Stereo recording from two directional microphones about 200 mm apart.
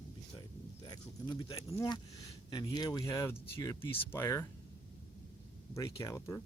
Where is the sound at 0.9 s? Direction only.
20° left (ahead or behind).